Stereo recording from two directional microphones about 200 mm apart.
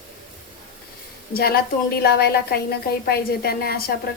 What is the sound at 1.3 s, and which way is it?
A woman's voice, 50° left (ahead or behind).